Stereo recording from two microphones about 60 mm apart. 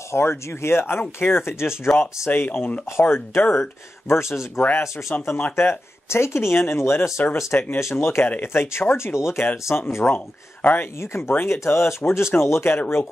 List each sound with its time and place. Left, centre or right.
0.1 s speech: left
4.6 s speech: left
7.2 s speech: left
10.0 s speech: left
11.0 s speech: left
12.6 s speech: left